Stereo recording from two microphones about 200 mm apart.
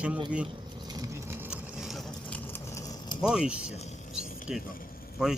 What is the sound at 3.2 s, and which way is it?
Speech, 5° right (ahead or behind).